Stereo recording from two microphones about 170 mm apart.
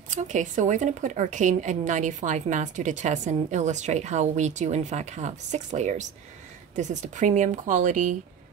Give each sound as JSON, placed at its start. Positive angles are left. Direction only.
{"t": 0.1, "sound": "speech", "side_deg": -45}